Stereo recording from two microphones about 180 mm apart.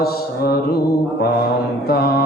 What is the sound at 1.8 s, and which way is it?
Speech, 60° left (ahead or behind).